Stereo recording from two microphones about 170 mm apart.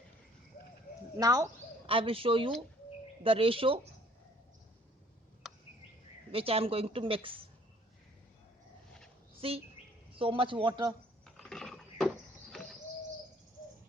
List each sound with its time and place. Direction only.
1.2 s speech: 20° right (ahead or behind)
1.9 s speech: 30° right (ahead or behind)
6.3 s speech: 35° right (ahead or behind)
9.4 s speech: 35° right (ahead or behind)
11.3 s a sound: 5° left (ahead or behind)